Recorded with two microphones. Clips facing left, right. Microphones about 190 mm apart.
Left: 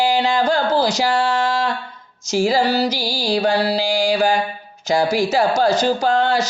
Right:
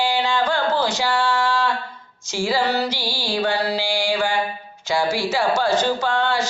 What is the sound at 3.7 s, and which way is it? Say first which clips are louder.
Mantra: left 4 dB; 40° left (ahead or behind).